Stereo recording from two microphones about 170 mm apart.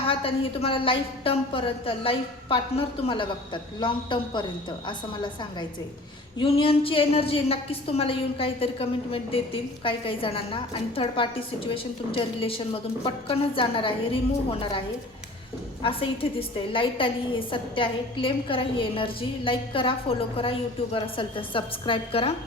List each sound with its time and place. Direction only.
0.1 s a woman's voice: 35° left (ahead or behind)
15.8 s a woman's voice: 30° left (ahead or behind)